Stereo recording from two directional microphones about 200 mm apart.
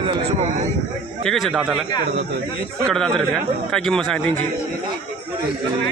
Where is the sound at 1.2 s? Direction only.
Centre (ahead or behind).